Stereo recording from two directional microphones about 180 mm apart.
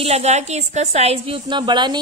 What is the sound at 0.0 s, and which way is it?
A woman's voice, 35° right (ahead or behind).